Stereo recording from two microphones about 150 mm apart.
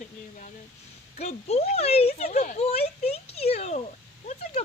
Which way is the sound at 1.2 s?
45° left (ahead or behind).